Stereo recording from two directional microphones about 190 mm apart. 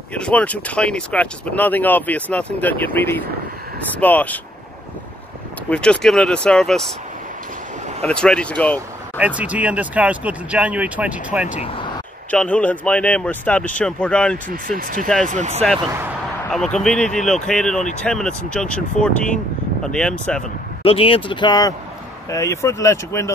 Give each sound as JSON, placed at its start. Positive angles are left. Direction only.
{"t": 0.1, "sound": "speech", "side_deg": 5}
{"t": 5.7, "sound": "speech", "side_deg": 5}
{"t": 8.0, "sound": "speech", "side_deg": 5}
{"t": 9.2, "sound": "speech", "side_deg": -5}
{"t": 12.3, "sound": "speech", "side_deg": 5}
{"t": 14.5, "sound": "speech", "side_deg": -50}
{"t": 16.4, "sound": "speech", "side_deg": 5}
{"t": 20.8, "sound": "speech", "side_deg": 30}